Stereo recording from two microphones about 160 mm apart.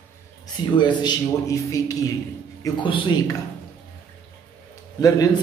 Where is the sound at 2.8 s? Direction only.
30° left (ahead or behind).